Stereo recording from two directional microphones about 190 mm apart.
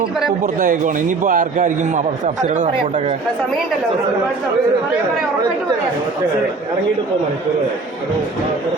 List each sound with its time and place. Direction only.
0.4 s a man's voice: 50° right (ahead or behind)